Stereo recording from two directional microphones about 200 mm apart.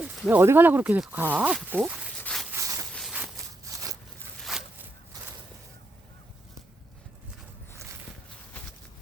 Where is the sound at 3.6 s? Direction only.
15° right (ahead or behind).